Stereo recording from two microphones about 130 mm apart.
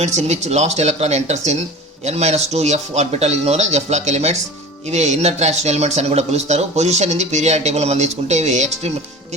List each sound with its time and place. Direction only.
0.0 s speech: 60° right (ahead or behind)